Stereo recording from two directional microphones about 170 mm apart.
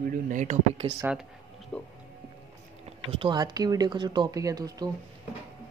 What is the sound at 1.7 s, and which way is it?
Speech, 10° left (ahead or behind).